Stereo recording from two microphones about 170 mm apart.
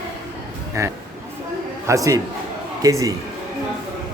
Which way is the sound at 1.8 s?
20° right (ahead or behind).